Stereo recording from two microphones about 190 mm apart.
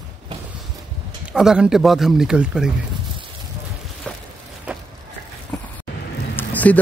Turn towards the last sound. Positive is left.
turn(degrees=10)  # may be behind; listen again after turning